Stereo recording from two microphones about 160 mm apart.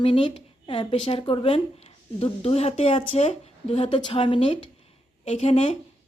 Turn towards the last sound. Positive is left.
turn(degrees=40)  # may be behind; listen again after turning